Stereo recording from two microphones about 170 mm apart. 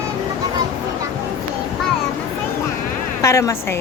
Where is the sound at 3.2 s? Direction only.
15° left (ahead or behind).